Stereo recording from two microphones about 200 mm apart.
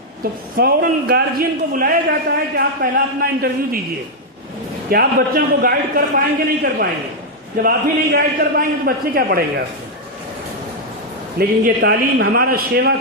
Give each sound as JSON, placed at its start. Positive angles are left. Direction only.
{"t": 0.2, "sound": "a man's voice", "side_deg": -50}
{"t": 4.9, "sound": "a man's voice", "side_deg": -45}
{"t": 11.3, "sound": "a man's voice", "side_deg": -50}